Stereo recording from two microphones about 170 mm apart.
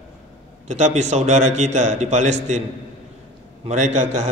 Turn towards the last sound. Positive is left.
turn(degrees=-45)  # may be behind; listen again after turning